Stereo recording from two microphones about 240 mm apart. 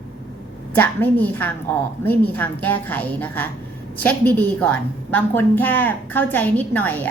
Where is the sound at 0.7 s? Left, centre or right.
Centre.